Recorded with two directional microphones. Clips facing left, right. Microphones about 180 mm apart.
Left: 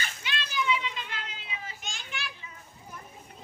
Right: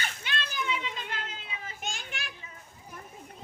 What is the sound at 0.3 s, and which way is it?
Children playing, 50° right (ahead or behind).